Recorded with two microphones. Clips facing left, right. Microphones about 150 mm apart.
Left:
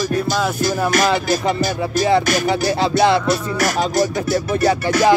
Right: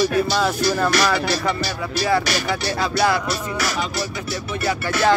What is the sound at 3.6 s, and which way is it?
Music, 45° left (ahead or behind).